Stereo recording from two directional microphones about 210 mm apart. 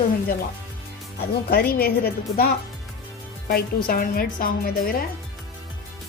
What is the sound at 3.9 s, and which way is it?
Speech, 45° left (ahead or behind).